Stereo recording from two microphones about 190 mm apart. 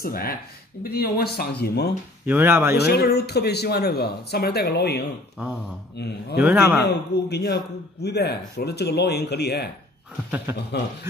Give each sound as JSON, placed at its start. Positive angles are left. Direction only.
{"t": 0.0, "sound": "speech", "side_deg": 50}
{"t": 2.2, "sound": "speech", "side_deg": -10}
{"t": 2.7, "sound": "speech", "side_deg": 55}
{"t": 6.4, "sound": "speech", "side_deg": -5}
{"t": 6.8, "sound": "speech", "side_deg": 60}
{"t": 10.5, "sound": "speech", "side_deg": -15}